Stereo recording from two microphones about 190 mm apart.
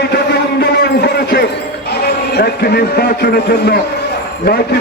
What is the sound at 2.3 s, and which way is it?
Speech, 55° left (ahead or behind).